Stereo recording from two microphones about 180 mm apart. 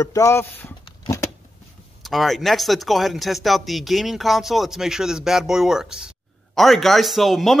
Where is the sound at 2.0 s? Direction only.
Centre (ahead or behind).